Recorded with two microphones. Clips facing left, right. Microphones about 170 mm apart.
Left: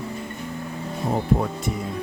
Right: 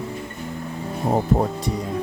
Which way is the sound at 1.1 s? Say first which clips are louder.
Right 3 dB; 35° right (ahead or behind).